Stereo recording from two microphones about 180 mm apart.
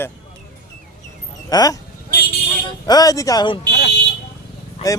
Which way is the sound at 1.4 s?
20° left (ahead or behind).